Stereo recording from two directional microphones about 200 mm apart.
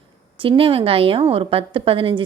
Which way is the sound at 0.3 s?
25° right (ahead or behind).